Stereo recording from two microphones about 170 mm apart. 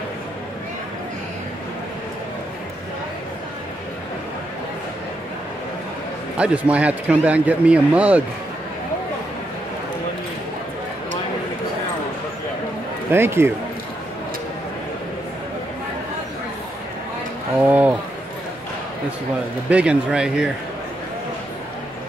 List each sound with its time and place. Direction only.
6.3 s a man's voice: 5° right (ahead or behind)
13.1 s a man's voice: 15° right (ahead or behind)
17.6 s a man's voice: 10° right (ahead or behind)
19.7 s a man's voice: 5° right (ahead or behind)